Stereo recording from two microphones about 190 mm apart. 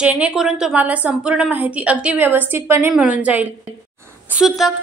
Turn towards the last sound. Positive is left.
turn(degrees=0)  # may be behind; listen again after turning